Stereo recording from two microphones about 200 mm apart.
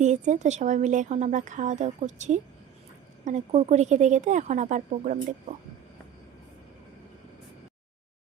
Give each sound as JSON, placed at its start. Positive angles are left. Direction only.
{"t": 0.0, "sound": "a woman's voice", "side_deg": -35}